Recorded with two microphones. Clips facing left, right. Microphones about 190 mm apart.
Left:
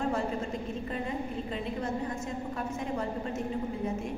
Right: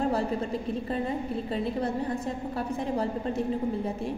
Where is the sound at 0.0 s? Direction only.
35° right (ahead or behind).